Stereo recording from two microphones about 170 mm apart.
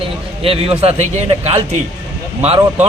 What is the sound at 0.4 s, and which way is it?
A man's voice, 35° right (ahead or behind).